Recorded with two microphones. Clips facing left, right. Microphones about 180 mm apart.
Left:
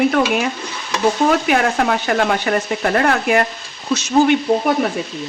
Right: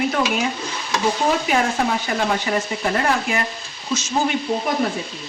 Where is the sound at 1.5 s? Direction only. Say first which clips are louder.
Left 3 dB; 65° left (ahead or behind).